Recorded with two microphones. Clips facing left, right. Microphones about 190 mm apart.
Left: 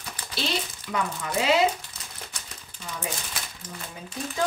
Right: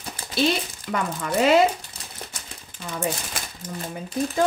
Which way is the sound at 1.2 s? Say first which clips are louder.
Right 6 dB; 50° right (ahead or behind).